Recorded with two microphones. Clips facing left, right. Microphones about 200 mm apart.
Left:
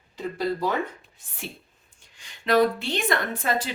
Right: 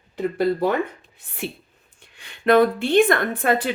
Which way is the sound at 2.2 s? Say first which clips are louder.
Right 4 dB; 55° right (ahead or behind).